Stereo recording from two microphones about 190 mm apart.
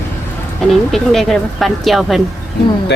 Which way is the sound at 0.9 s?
Centre (ahead or behind).